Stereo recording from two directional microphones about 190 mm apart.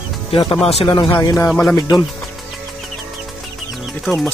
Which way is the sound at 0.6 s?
30° left (ahead or behind).